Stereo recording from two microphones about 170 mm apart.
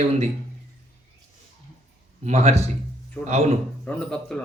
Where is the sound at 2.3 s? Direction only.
40° right (ahead or behind).